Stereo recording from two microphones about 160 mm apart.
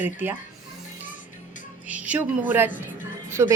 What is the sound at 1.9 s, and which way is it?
A woman's voice, 10° right (ahead or behind).